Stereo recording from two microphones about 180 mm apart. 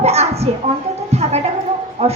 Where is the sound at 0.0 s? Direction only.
35° right (ahead or behind).